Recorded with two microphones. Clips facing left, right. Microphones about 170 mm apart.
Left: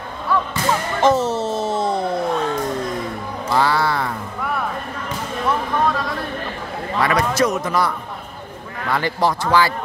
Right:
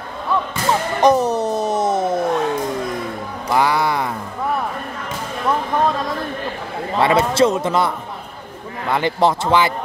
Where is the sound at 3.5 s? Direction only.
15° right (ahead or behind).